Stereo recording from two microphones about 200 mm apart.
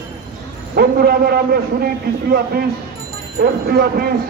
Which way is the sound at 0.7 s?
50° right (ahead or behind).